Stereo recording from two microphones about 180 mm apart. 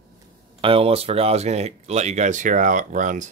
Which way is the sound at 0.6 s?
30° right (ahead or behind).